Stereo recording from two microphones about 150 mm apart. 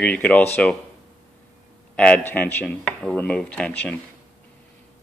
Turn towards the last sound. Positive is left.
turn(degrees=10)  # may be behind; listen again after turning